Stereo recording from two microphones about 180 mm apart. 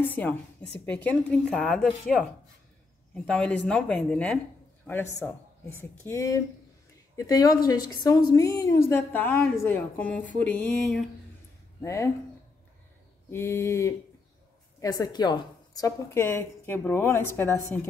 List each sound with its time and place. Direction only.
0.0 s a woman's voice: 10° left (ahead or behind)
5.8 s a woman's voice: 15° left (ahead or behind)
11.8 s a woman's voice: 15° left (ahead or behind)
13.3 s a woman's voice: 15° left (ahead or behind)